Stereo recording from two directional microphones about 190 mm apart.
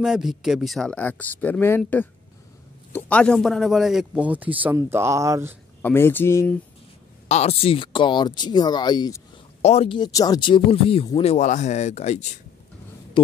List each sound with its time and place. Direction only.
0.0 s speech: 5° right (ahead or behind)
5.8 s speech: 10° left (ahead or behind)
7.2 s speech: 35° left (ahead or behind)
9.6 s speech: 35° left (ahead or behind)